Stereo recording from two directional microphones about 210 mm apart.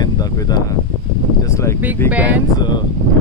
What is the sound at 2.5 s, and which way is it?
Speech, 20° left (ahead or behind).